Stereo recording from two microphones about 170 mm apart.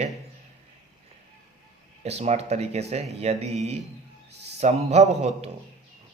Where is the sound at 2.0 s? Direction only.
40° right (ahead or behind).